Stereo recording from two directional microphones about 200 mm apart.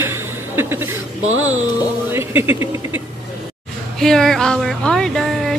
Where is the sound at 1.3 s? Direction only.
85° right.